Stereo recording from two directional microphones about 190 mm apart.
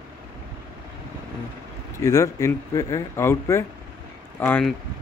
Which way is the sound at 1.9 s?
15° left (ahead or behind).